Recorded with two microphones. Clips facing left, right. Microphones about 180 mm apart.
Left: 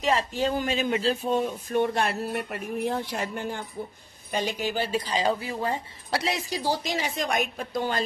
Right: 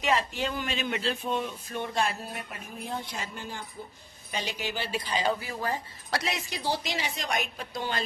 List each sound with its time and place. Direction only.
0.0 s speech: 35° left (ahead or behind); by 3.6 s 60° left (ahead or behind)
4.3 s speech: 50° left (ahead or behind)